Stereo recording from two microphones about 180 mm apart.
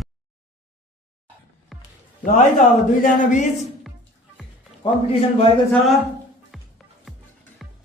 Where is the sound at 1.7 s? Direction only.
Centre (ahead or behind).